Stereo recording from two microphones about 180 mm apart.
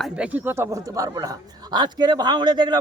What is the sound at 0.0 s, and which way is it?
Speech, 5° right (ahead or behind).